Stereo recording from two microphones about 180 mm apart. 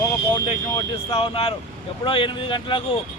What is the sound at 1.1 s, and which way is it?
Speech, 35° left (ahead or behind).